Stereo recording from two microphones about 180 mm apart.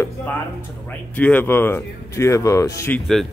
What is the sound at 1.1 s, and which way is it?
Speech, 10° left (ahead or behind).